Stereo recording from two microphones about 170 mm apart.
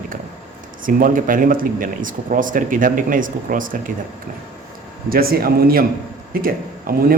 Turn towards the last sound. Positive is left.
turn(degrees=-55)  # may be behind; listen again after turning